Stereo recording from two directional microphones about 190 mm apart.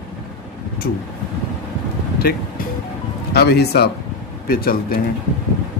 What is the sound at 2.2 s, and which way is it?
Speech, 50° left (ahead or behind).